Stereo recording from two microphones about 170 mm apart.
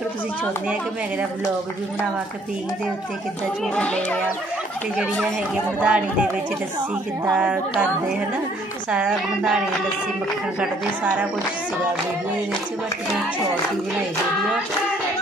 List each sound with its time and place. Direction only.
3.7 s speech: 5° left (ahead or behind)
5.8 s speech: 10° right (ahead or behind)
8.9 s speech: 5° right (ahead or behind)